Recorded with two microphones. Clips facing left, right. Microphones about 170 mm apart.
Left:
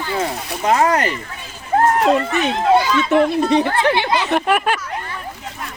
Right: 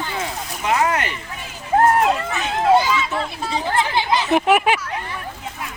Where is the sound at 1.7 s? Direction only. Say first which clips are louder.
Left 1 dB; centre (ahead or behind).